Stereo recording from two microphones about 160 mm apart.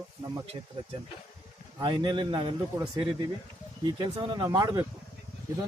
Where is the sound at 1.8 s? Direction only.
30° right (ahead or behind).